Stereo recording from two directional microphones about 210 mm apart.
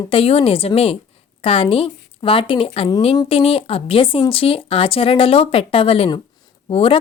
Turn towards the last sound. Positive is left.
turn(degrees=25)  # may be behind; listen again after turning